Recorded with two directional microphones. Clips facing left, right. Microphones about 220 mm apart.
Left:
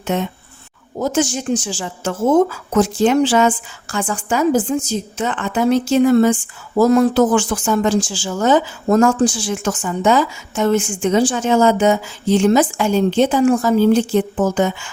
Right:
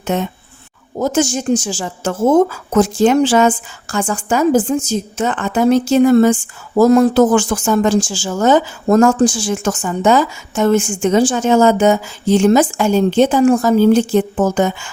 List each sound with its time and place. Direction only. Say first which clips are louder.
0.1 s a woman's voice: right 1 dB; 45° right (ahead or behind)